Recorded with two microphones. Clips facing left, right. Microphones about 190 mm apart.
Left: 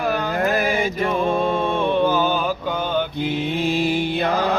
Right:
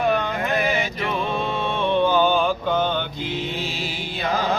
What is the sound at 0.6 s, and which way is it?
Music, 50° left (ahead or behind).